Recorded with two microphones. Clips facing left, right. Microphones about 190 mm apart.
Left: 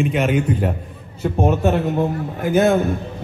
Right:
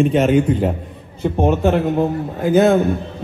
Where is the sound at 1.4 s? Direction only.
20° right (ahead or behind).